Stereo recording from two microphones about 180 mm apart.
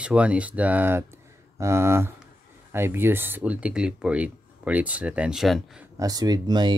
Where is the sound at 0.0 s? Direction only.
5° right (ahead or behind).